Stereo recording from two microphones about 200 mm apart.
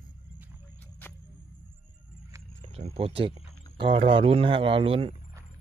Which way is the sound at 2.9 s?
30° right (ahead or behind).